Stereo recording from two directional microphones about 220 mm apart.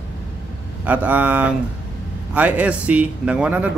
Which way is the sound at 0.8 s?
5° right (ahead or behind).